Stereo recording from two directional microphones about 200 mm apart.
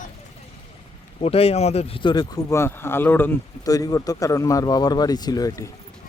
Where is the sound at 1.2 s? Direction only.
30° left (ahead or behind).